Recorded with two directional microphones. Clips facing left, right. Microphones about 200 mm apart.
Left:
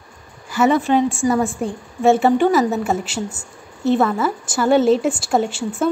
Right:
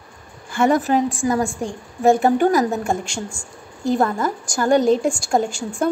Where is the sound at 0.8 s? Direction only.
Centre (ahead or behind).